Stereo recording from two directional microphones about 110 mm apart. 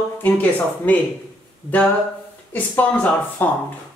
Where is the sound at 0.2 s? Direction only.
15° left (ahead or behind).